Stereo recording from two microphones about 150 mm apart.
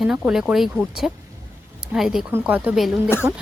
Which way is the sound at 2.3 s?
15° right (ahead or behind).